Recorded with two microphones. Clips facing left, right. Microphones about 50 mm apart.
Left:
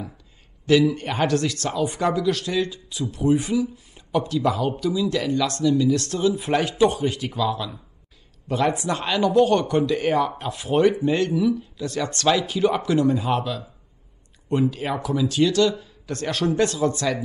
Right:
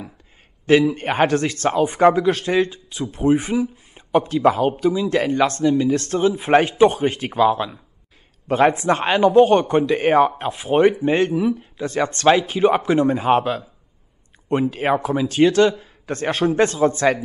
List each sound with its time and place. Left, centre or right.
0.7 s speech: right